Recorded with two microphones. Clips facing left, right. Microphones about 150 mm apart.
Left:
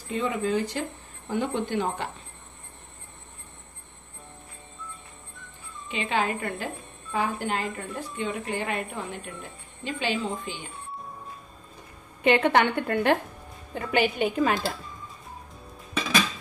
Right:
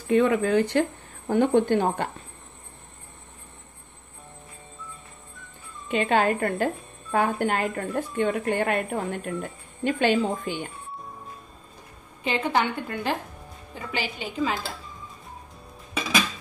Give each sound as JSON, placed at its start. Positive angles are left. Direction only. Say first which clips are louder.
{"t": 0.1, "sound": "a woman's voice", "louder": "right 6 dB", "side_deg": -60}
{"t": 1.2, "sound": "speech", "louder": "right 8 dB", "side_deg": -50}
{"t": 5.9, "sound": "a woman's voice", "louder": "right 5 dB", "side_deg": -50}
{"t": 12.2, "sound": "a woman's voice", "louder": "left 4 dB", "side_deg": 65}